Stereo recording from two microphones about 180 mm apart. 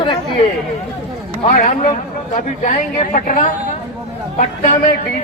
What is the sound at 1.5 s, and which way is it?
A man's voice, 50° left (ahead or behind).